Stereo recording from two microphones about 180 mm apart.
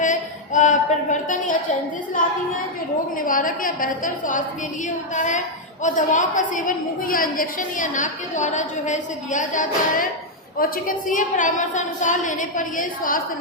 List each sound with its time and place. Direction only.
0.0 s a woman's voice: 45° left (ahead or behind)
3.2 s a woman's voice: 50° left (ahead or behind)